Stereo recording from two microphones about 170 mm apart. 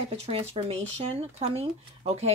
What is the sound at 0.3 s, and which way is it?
Speech, 35° right (ahead or behind).